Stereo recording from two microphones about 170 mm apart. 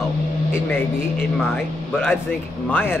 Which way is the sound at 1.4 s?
Centre (ahead or behind).